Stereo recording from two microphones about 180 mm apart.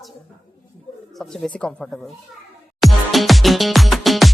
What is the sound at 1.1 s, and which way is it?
Speech, centre (ahead or behind).